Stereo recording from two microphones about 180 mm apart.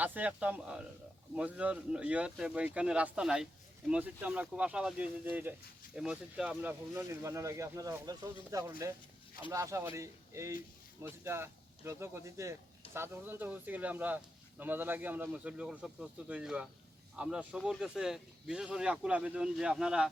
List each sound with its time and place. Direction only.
0.0 s speech: 10° right (ahead or behind)